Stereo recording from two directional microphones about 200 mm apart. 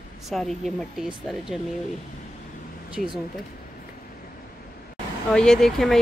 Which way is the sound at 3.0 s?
45° left (ahead or behind).